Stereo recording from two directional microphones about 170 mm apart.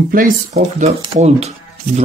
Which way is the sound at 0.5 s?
40° right (ahead or behind).